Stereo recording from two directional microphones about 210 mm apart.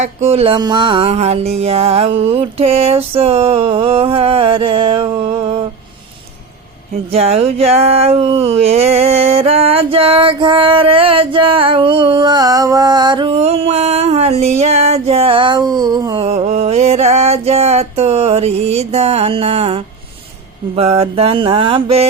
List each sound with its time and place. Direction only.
0.0 s speech: 30° right (ahead or behind)
7.1 s speech: 30° right (ahead or behind)
16.2 s speech: 30° right (ahead or behind)